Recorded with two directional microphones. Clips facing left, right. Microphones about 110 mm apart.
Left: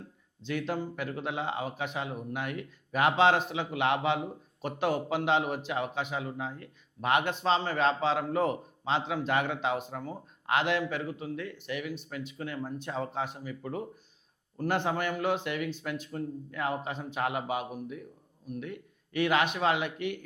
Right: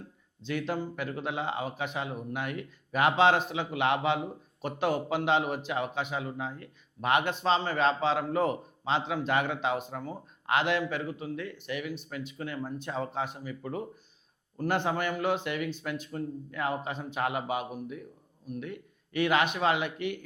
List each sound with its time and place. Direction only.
0.4 s a man's voice: 15° right (ahead or behind)